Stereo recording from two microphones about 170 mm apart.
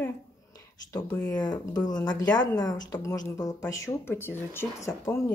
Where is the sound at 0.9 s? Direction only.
10° left (ahead or behind).